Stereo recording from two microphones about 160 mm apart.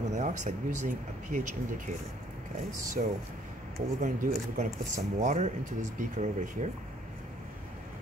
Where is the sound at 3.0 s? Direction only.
50° right (ahead or behind).